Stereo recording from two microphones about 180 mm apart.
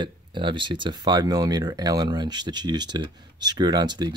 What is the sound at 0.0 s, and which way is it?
Speech, 25° right (ahead or behind).